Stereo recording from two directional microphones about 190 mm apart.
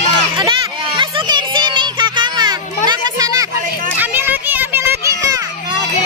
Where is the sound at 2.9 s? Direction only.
20° right (ahead or behind).